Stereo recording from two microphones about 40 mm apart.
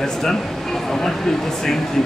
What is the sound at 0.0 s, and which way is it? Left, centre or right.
Speech, centre.